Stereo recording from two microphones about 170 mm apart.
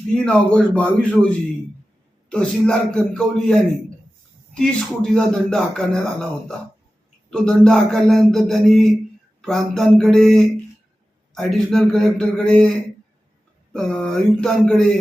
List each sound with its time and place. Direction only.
0.1 s a man's voice: 5° left (ahead or behind)
5.1 s a man's voice: 5° left (ahead or behind)
7.3 s a man's voice: 5° left (ahead or behind)
13.7 s a man's voice: 5° left (ahead or behind)